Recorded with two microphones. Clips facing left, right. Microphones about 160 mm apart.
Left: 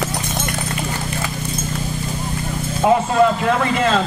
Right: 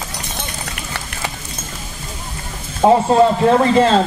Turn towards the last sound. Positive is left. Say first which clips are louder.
# right 5 dB
turn(degrees=-30)  # may be behind; listen again after turning